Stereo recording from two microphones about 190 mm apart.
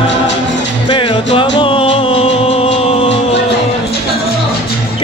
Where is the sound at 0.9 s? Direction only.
25° left (ahead or behind).